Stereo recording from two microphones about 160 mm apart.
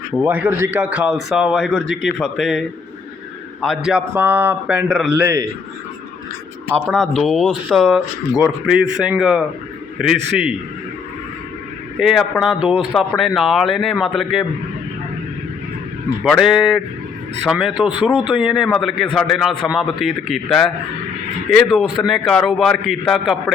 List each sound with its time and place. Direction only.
0.3 s a man's voice: 10° right (ahead or behind)
5.2 s a man's voice: 20° right (ahead or behind)
6.8 s a man's voice: centre (ahead or behind)
11.9 s a man's voice: centre (ahead or behind)
16.2 s a man's voice: centre (ahead or behind)